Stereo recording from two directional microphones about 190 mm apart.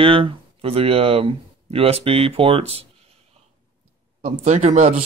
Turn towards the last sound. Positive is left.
turn(degrees=-40)  # may be behind; listen again after turning